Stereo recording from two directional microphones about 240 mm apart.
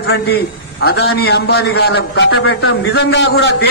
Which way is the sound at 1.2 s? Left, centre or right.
Left.